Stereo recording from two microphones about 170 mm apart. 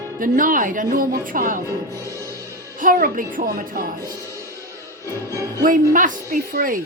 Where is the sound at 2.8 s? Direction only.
55° right (ahead or behind).